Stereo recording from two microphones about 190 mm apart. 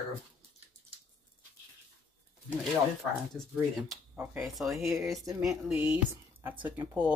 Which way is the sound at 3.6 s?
10° right (ahead or behind).